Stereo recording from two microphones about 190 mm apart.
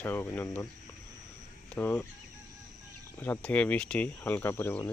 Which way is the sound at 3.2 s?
10° left (ahead or behind).